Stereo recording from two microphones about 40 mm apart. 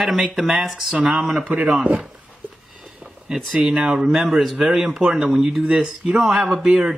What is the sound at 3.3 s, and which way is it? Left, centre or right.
Speech, centre.